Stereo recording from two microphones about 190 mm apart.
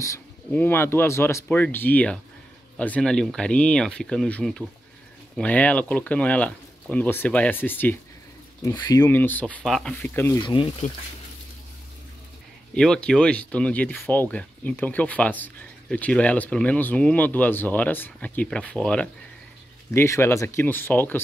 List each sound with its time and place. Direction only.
0.0 s speech: 10° left (ahead or behind)
10.4 s speech: 25° left (ahead or behind)
12.7 s speech: 5° left (ahead or behind)